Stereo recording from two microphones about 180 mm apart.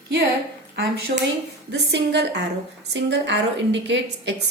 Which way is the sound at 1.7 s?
80° right.